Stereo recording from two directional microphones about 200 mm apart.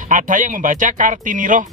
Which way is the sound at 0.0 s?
40° right (ahead or behind).